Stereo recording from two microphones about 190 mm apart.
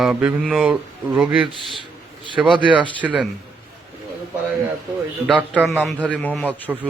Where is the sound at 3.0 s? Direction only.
Centre (ahead or behind).